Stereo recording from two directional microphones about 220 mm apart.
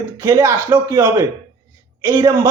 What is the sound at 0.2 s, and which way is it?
A man's voice, 10° right (ahead or behind).